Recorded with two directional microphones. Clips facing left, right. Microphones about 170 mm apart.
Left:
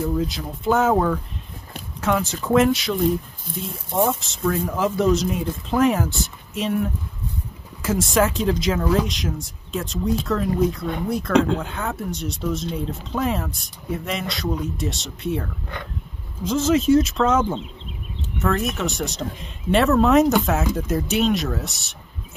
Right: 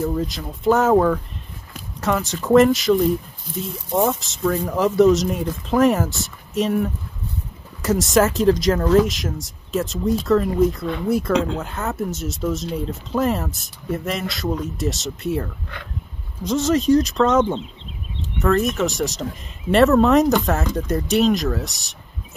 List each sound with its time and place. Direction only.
0.1 s speech: centre (ahead or behind)
16.4 s speech: centre (ahead or behind)